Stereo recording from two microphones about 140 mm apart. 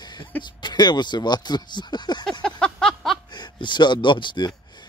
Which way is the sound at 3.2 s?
30° left (ahead or behind).